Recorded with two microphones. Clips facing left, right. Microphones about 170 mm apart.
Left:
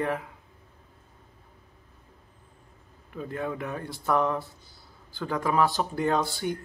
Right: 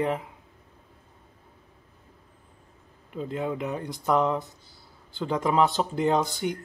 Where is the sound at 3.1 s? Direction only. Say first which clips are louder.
Right 3 dB; 20° right (ahead or behind).